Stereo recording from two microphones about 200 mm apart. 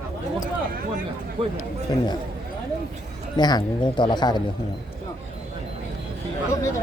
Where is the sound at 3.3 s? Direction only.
20° left (ahead or behind).